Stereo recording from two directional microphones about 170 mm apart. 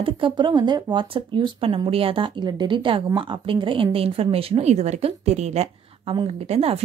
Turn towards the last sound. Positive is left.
turn(degrees=-35)  # may be behind; listen again after turning